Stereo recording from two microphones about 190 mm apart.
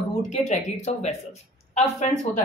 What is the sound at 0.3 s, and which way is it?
Speech, 35° left (ahead or behind).